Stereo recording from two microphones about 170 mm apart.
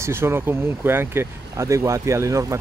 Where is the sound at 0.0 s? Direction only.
15° right (ahead or behind).